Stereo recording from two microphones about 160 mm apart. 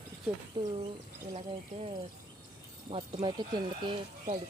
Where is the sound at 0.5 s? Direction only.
30° right (ahead or behind).